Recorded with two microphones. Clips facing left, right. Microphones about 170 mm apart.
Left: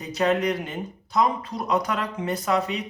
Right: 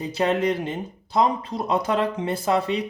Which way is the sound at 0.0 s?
30° right (ahead or behind).